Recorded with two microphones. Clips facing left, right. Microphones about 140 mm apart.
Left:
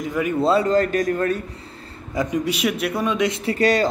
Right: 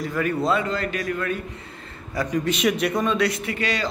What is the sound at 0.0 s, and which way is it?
Speech, 15° left (ahead or behind).